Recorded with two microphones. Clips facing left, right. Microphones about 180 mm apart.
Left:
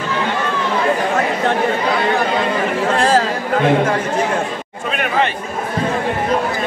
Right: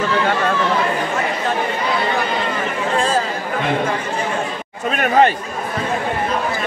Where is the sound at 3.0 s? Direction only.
80° left.